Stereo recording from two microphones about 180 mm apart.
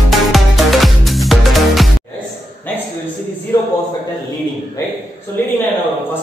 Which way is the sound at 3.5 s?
15° left (ahead or behind).